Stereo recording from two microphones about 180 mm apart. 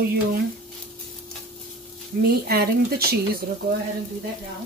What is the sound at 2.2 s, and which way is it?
Speech, 60° right (ahead or behind).